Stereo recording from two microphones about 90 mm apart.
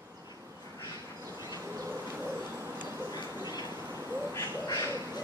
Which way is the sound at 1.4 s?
40° right (ahead or behind).